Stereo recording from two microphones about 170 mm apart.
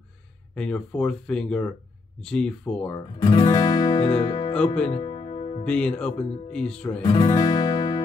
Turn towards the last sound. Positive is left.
turn(degrees=25)  # may be behind; listen again after turning